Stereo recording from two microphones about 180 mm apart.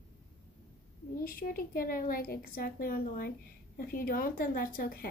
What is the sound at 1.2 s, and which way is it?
A woman's voice, 55° left (ahead or behind).